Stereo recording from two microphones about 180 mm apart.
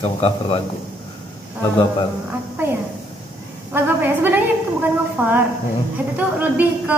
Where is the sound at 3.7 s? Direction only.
10° right (ahead or behind).